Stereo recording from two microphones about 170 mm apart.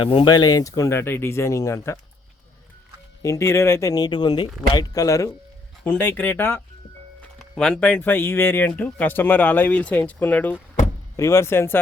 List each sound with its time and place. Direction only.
0.0 s speech: 30° left (ahead or behind)
3.2 s speech: 15° left (ahead or behind)